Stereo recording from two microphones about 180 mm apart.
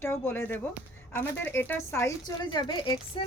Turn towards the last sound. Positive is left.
turn(degrees=25)  # may be behind; listen again after turning